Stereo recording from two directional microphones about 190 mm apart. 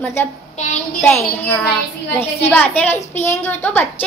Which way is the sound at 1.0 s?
10° left (ahead or behind).